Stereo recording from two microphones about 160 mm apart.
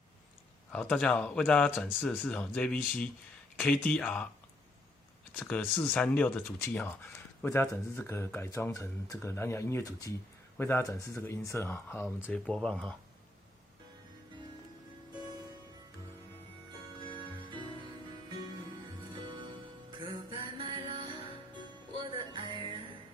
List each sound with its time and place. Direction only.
0.7 s speech: 5° left (ahead or behind)
5.4 s speech: 10° left (ahead or behind)
17.2 s music: 30° right (ahead or behind)
19.9 s music: 30° right (ahead or behind)